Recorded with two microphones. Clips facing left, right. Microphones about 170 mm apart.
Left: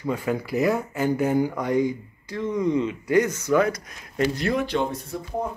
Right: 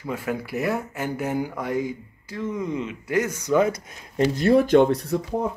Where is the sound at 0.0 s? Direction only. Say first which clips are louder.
Left 2 dB; 5° right (ahead or behind); by 4.3 s 20° right (ahead or behind).